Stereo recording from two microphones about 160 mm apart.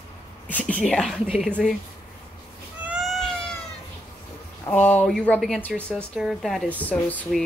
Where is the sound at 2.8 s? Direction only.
5° right (ahead or behind).